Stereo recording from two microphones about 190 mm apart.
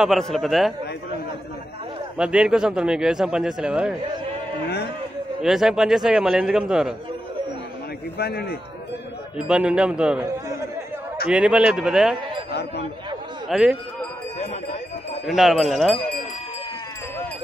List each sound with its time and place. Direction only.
0.0 s a man's voice: centre (ahead or behind)
2.1 s a man's voice: 5° right (ahead or behind)
5.4 s a man's voice: centre (ahead or behind)
8.2 s a man's voice: 55° left (ahead or behind)
9.5 s a man's voice: 5° right (ahead or behind)
11.2 s a man's voice: 5° right (ahead or behind)
13.5 s speech: centre (ahead or behind)
14.4 s horse: 35° left (ahead or behind)
15.2 s a man's voice: centre (ahead or behind)